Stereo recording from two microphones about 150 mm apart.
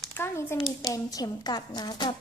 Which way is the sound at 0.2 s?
15° left (ahead or behind).